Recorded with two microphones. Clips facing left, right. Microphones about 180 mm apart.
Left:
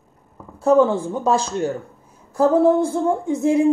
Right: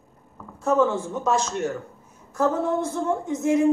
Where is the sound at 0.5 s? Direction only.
35° left (ahead or behind).